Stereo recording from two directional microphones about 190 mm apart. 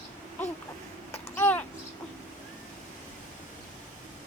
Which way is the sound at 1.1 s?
10° left (ahead or behind).